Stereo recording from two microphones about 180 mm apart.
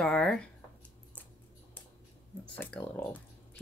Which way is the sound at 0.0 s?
5° left (ahead or behind).